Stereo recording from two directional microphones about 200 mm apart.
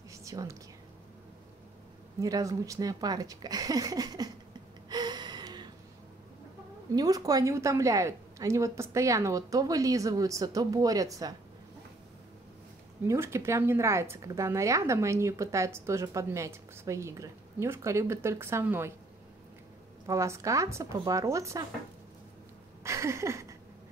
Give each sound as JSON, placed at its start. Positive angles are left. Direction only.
{"t": 0.2, "sound": "speech", "side_deg": -15}
{"t": 2.1, "sound": "speech", "side_deg": -15}
{"t": 4.8, "sound": "gasp", "side_deg": -20}
{"t": 6.9, "sound": "speech", "side_deg": -20}
{"t": 13.0, "sound": "speech", "side_deg": -15}
{"t": 20.1, "sound": "speech", "side_deg": -15}
{"t": 22.8, "sound": "a sound", "side_deg": -15}